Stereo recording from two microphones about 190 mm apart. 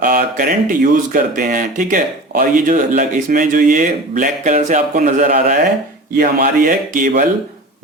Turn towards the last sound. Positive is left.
turn(degrees=-45)  # may be behind; listen again after turning